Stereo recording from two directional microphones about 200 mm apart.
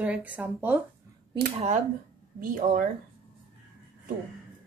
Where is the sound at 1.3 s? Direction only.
30° right (ahead or behind).